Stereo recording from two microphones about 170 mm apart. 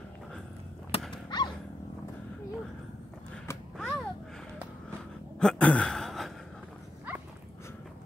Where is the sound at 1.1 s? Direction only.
25° left (ahead or behind).